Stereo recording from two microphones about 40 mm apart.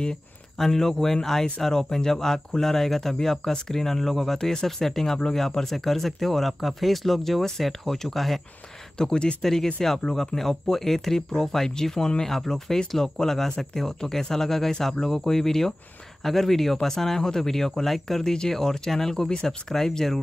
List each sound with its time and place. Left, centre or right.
0.6 s speech: centre
8.9 s speech: centre